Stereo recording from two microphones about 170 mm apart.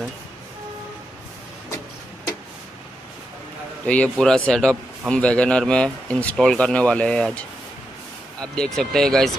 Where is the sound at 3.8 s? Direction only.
5° left (ahead or behind).